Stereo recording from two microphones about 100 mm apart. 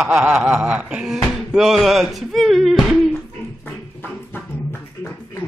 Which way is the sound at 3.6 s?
20° left (ahead or behind).